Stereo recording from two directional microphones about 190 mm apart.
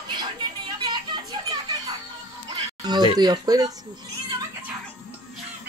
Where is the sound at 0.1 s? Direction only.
25° right (ahead or behind).